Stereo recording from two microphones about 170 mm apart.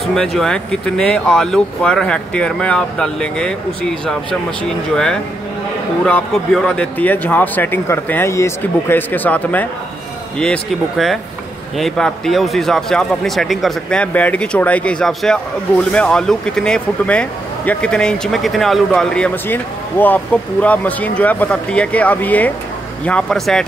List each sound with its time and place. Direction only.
0.0 s speech: centre (ahead or behind)